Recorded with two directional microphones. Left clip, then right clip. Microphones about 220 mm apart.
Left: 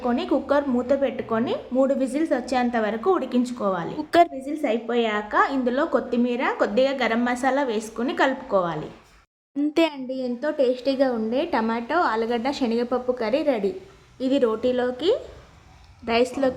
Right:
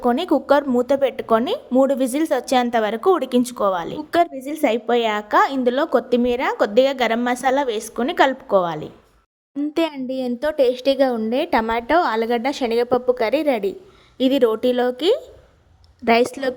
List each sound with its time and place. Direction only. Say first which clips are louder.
0.0 s a woman's voice: right 5 dB; 45° right (ahead or behind)
9.6 s a child's voice: even; centre (ahead or behind)
10.1 s a woman's voice: right 4 dB; 45° right (ahead or behind)